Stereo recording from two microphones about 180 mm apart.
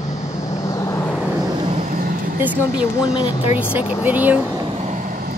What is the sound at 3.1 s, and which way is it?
Speech, 25° left (ahead or behind).